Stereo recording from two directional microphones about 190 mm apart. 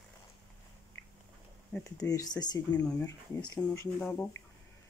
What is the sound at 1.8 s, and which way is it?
Speech, 15° left (ahead or behind).